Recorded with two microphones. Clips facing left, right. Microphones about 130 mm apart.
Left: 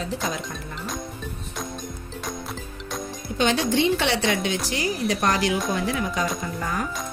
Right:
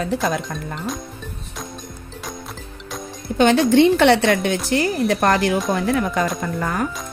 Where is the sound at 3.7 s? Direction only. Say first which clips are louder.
Right 9 dB; 55° right (ahead or behind).